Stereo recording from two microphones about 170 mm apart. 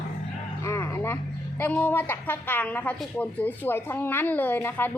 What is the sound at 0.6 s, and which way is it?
A woman's voice, 15° left (ahead or behind).